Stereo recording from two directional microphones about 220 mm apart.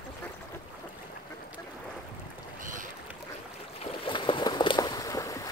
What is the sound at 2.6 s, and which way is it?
Boat, 35° right (ahead or behind).